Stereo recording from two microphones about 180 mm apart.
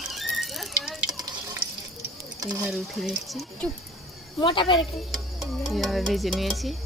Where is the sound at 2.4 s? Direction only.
20° right (ahead or behind).